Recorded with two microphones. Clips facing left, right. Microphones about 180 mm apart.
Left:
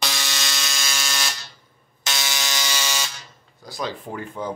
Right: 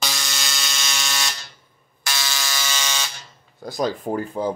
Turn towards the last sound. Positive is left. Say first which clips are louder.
# right 6 dB
turn(degrees=-35)  # may be behind; listen again after turning